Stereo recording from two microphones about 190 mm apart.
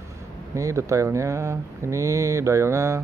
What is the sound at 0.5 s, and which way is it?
Speech, 15° right (ahead or behind).